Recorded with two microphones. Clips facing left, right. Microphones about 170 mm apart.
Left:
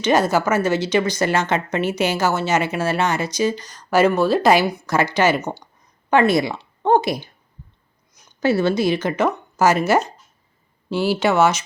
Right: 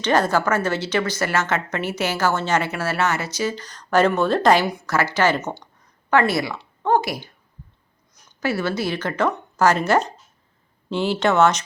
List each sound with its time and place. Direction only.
0.0 s speech: 10° left (ahead or behind)
6.1 s speech: 20° left (ahead or behind)
8.4 s speech: 20° left (ahead or behind); by 11.6 s 5° left (ahead or behind)